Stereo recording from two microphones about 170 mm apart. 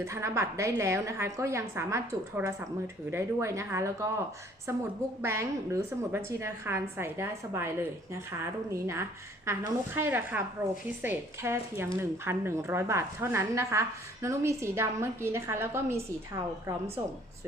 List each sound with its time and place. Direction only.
0.0 s a woman's voice: 15° right (ahead or behind)